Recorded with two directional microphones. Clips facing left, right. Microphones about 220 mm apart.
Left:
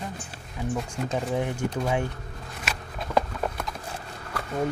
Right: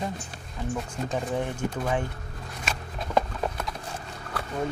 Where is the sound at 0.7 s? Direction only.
10° left (ahead or behind).